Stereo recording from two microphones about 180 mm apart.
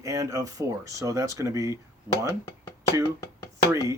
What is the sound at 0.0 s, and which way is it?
Speech, 20° right (ahead or behind).